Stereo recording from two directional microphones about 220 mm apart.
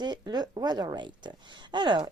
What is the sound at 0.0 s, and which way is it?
Speech, 20° right (ahead or behind).